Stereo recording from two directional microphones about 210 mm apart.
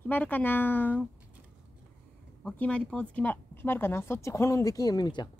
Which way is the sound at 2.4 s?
5° left (ahead or behind).